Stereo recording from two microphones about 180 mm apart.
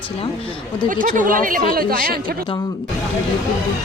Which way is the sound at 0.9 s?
50° right (ahead or behind).